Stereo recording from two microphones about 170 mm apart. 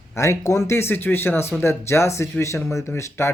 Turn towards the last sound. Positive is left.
turn(degrees=15)  # may be behind; listen again after turning